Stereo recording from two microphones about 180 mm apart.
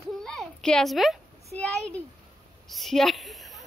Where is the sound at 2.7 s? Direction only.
Centre (ahead or behind).